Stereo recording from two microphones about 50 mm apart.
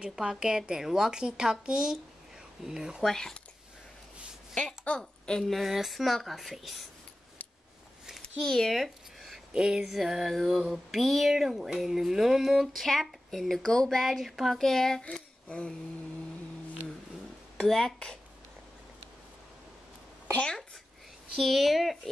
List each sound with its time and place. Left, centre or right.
0.1 s a woman's voice: centre
3.1 s speech: centre
4.6 s a woman's voice: left
5.5 s speech: centre
8.4 s speech: centre
8.7 s a sound: centre
9.5 s a sound: centre
9.8 s speech: centre
13.9 s speech: centre
14.6 s speech: centre
15.4 s a sound: left
17.6 s speech: centre
21.4 s speech: centre